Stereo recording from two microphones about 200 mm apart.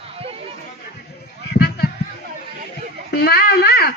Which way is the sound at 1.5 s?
55° left (ahead or behind).